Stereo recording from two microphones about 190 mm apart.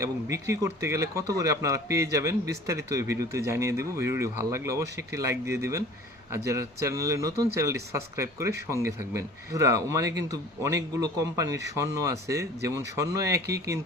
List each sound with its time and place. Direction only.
0.0 s speech: 15° right (ahead or behind)